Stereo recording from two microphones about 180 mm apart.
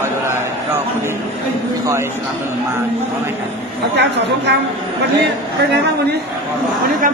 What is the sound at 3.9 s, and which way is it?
Speech, 75° right (ahead or behind).